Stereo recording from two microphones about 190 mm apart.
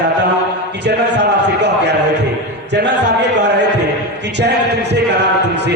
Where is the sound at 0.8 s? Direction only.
60° right (ahead or behind).